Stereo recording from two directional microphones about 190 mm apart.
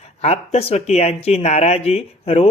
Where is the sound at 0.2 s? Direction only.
35° left (ahead or behind).